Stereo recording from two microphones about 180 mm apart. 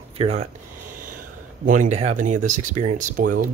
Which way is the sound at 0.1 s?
35° right (ahead or behind).